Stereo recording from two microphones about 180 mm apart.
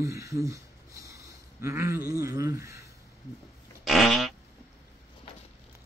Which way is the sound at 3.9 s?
Centre (ahead or behind).